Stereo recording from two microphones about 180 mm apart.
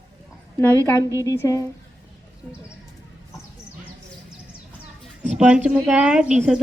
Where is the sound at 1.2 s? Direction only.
20° left (ahead or behind).